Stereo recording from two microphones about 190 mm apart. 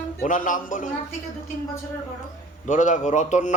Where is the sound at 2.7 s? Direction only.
40° left (ahead or behind).